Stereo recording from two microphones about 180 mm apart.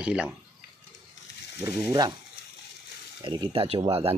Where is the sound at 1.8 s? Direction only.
20° right (ahead or behind).